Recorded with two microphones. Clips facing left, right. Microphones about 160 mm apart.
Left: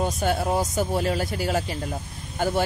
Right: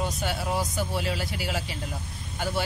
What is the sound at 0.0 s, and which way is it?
Speech, 45° left (ahead or behind).